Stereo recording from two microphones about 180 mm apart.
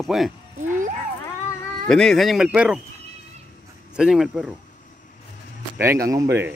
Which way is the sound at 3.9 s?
5° right (ahead or behind).